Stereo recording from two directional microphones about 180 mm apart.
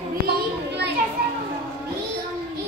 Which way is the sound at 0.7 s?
65° right (ahead or behind).